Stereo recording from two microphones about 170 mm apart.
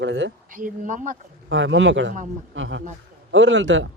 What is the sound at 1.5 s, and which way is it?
Speech, 90° right.